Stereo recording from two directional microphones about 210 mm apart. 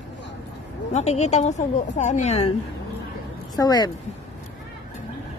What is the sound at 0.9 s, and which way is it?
A woman's voice, 30° left (ahead or behind).